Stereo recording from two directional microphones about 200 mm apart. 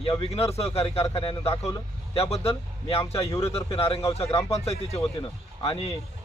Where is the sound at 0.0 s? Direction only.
30° left (ahead or behind).